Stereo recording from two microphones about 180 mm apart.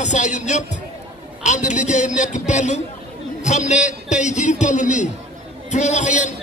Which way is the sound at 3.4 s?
40° left (ahead or behind).